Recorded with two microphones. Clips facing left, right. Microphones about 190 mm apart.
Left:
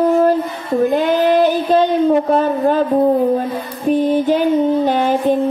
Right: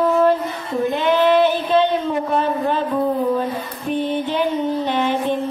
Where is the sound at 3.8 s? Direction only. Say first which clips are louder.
Left 7 dB; 40° left (ahead or behind).